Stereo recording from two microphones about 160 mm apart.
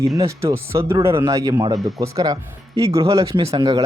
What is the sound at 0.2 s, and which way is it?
Speech, 20° right (ahead or behind).